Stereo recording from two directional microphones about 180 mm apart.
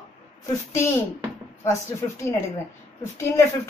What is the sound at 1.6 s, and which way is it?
A woman's voice, 15° left (ahead or behind).